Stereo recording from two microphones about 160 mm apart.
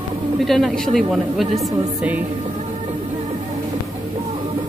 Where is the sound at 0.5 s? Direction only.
Centre (ahead or behind).